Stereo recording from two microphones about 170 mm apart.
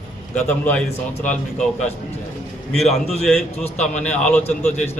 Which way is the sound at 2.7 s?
Centre (ahead or behind).